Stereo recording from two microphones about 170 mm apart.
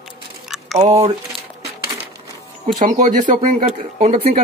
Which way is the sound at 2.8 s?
50° right (ahead or behind).